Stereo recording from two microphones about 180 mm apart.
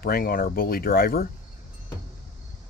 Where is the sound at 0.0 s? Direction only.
55° left (ahead or behind).